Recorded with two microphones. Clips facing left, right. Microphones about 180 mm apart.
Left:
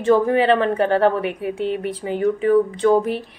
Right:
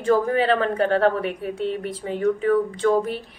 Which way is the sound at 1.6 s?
70° left (ahead or behind).